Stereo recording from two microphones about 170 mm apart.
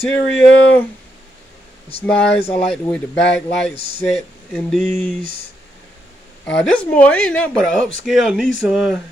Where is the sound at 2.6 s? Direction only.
5° left (ahead or behind).